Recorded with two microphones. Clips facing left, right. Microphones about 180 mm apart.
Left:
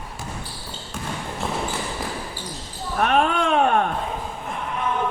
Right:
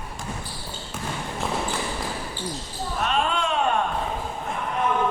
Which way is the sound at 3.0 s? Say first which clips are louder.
Left 5 dB; 60° left (ahead or behind).